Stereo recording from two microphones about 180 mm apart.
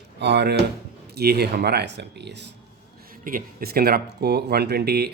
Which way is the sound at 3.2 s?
55° right (ahead or behind).